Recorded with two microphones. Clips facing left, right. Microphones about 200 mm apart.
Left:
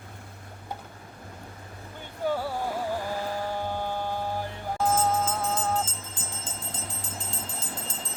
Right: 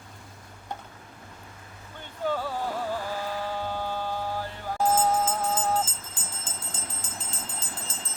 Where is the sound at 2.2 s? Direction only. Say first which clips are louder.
Left 1 dB; 10° left (ahead or behind).